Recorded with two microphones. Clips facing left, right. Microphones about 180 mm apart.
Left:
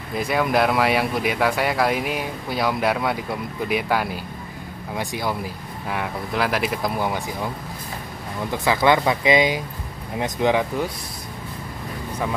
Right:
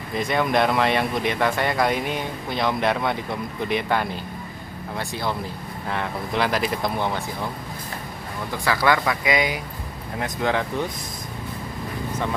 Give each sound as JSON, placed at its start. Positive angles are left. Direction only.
{"t": 0.1, "sound": "speech", "side_deg": 5}
{"t": 8.5, "sound": "speech", "side_deg": 20}